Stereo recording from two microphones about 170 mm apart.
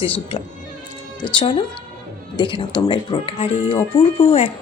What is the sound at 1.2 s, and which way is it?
Speech, 30° left (ahead or behind).